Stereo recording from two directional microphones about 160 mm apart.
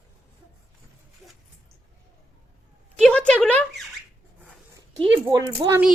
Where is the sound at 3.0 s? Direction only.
5° left (ahead or behind).